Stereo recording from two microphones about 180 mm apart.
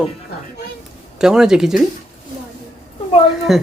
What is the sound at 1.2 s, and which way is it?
Speech, 5° right (ahead or behind).